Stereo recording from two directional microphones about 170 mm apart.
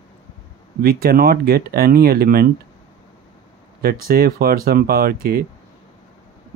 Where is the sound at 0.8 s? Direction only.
60° right (ahead or behind).